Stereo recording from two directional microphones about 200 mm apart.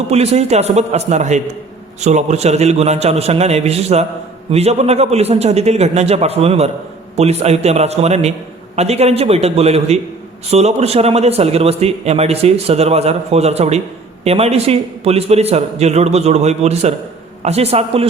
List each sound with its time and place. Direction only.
0.1 s a man's voice: 30° right (ahead or behind)